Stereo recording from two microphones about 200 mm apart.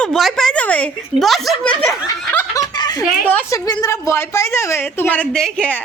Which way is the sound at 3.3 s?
10° left (ahead or behind).